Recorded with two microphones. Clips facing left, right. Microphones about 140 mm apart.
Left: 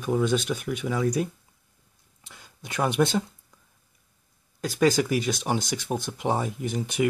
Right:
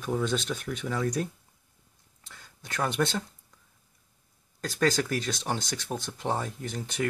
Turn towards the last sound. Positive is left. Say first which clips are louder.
# left 6 dB
turn(degrees=15)  # may be behind; listen again after turning